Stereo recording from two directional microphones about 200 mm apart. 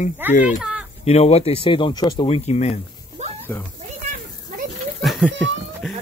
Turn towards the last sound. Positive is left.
turn(degrees=0)  # may be behind; listen again after turning